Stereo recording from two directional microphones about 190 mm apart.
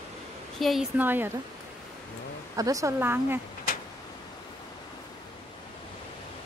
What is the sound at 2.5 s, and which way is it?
Speech, 15° right (ahead or behind).